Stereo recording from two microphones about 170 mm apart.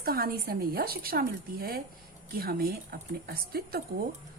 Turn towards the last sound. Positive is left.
turn(degrees=-65)  # may be behind; listen again after turning